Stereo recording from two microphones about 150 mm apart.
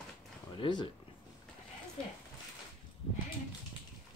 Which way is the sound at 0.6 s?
30° left (ahead or behind).